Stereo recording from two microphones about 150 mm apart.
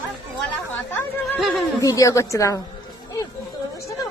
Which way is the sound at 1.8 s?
20° left (ahead or behind).